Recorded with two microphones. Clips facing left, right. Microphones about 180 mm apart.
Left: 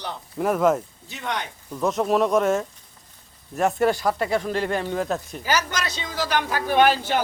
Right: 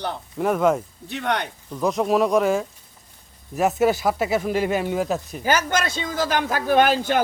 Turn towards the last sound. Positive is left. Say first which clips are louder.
# right 1 dB
turn(degrees=-45)  # may be behind; listen again after turning